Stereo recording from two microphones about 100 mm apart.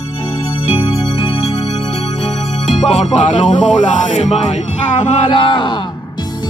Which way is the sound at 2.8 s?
90° left.